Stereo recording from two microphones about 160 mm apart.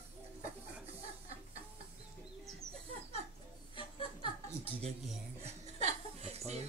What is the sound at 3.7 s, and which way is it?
Chuckle, 35° left (ahead or behind).